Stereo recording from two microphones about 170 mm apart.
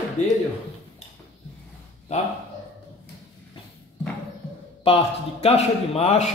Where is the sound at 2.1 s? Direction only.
40° left (ahead or behind).